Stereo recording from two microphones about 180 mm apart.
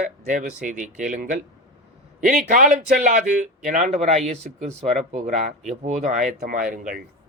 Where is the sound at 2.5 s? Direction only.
45° right (ahead or behind).